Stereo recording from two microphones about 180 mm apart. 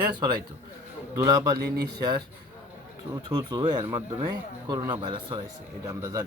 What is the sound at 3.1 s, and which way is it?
A man's voice, 20° right (ahead or behind).